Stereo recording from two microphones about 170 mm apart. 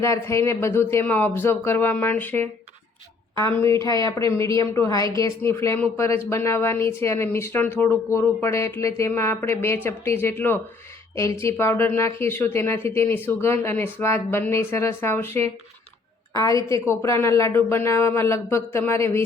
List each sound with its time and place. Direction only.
0.0 s a woman's voice: 15° left (ahead or behind)